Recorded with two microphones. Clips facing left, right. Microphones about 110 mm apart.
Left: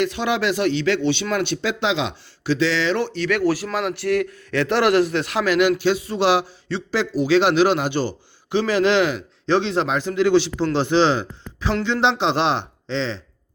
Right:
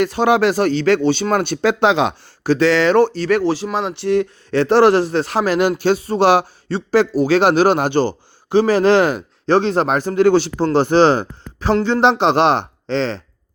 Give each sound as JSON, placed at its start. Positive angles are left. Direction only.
{"t": 0.0, "sound": "a man's voice", "side_deg": -45}
{"t": 3.4, "sound": "a man's voice", "side_deg": -25}